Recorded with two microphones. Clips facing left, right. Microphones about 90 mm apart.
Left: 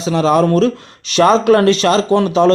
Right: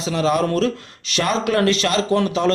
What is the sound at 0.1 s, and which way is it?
Speech, 30° left (ahead or behind).